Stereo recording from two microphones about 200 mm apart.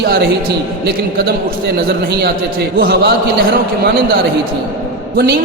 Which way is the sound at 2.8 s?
50° right (ahead or behind).